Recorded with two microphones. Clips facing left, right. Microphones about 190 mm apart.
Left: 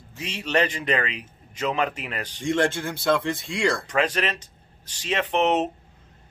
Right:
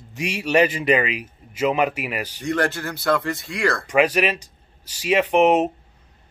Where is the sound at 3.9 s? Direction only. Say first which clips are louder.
Right 6 dB; 10° right (ahead or behind).